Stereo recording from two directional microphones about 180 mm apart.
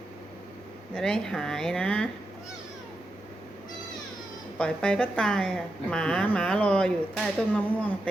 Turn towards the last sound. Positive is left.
turn(degrees=5)  # may be behind; listen again after turning